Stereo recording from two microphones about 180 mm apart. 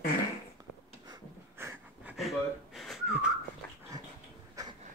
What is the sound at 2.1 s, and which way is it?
Whistling, centre (ahead or behind).